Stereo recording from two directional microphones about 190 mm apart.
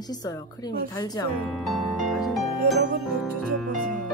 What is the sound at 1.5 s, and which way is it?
Music, centre (ahead or behind).